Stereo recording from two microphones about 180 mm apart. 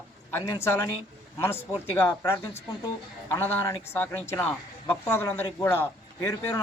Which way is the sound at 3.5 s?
15° left (ahead or behind).